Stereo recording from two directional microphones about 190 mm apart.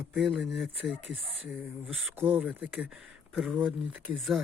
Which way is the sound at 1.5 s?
10° right (ahead or behind).